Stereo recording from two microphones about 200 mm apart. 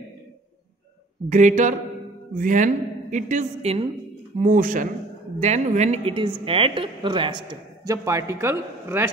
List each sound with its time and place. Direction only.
1.3 s a woman's voice: 40° right (ahead or behind); by 9.1 s 15° right (ahead or behind)